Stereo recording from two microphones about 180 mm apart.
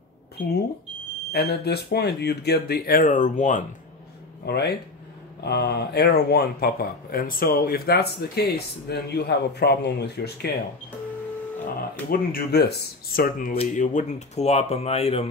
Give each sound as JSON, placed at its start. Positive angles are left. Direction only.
{"t": 1.3, "sound": "speech", "side_deg": 60}
{"t": 4.5, "sound": "speech", "side_deg": 65}
{"t": 11.6, "sound": "speech", "side_deg": 55}
{"t": 13.6, "sound": "speech", "side_deg": 45}